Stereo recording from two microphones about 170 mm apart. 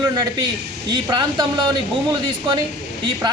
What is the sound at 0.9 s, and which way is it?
Speech, 25° right (ahead or behind).